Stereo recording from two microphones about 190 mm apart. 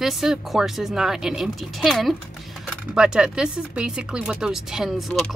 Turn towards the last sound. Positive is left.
turn(degrees=0)  # may be behind; listen again after turning